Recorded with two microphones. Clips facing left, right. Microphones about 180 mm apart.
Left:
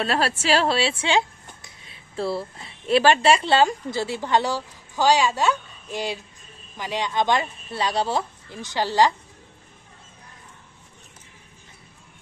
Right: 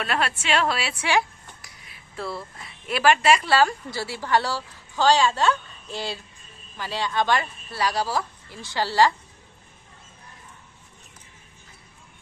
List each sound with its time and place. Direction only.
0.0 s a woman's voice: 30° left (ahead or behind)